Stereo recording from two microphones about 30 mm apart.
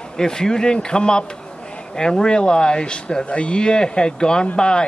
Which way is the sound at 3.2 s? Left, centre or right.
Left.